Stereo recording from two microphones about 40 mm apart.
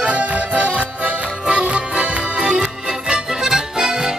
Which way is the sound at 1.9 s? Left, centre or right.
Right.